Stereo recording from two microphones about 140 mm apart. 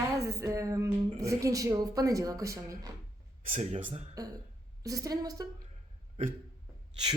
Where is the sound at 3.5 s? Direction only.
60° right (ahead or behind).